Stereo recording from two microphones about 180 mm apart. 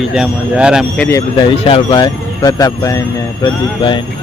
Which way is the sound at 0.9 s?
10° left (ahead or behind).